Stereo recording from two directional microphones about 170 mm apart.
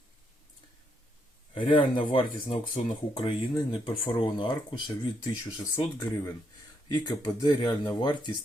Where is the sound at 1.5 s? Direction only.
30° left (ahead or behind).